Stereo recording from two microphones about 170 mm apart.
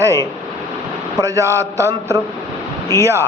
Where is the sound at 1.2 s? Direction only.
20° right (ahead or behind).